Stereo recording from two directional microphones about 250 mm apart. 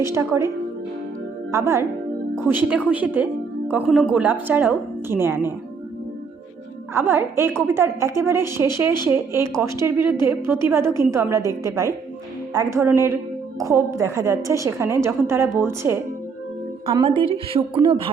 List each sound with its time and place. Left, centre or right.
0.1 s a woman's voice: centre
6.9 s a woman's voice: centre
16.9 s a woman's voice: right